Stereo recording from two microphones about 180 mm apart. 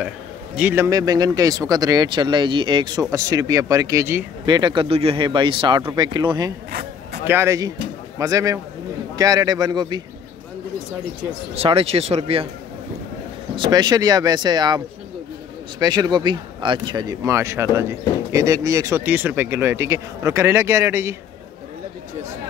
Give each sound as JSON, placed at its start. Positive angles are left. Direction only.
{"t": 0.6, "sound": "speech", "side_deg": -10}
{"t": 4.5, "sound": "speech", "side_deg": -25}
{"t": 11.5, "sound": "speech", "side_deg": -35}
{"t": 13.6, "sound": "speech", "side_deg": -25}
{"t": 15.8, "sound": "speech", "side_deg": -20}